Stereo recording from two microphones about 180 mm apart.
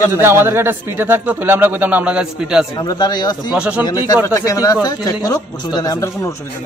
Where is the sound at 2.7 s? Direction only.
25° left (ahead or behind).